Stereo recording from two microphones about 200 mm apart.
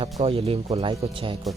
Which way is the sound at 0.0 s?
30° right (ahead or behind).